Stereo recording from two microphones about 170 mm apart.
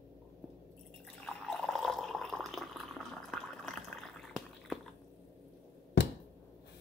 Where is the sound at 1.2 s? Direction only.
Centre (ahead or behind).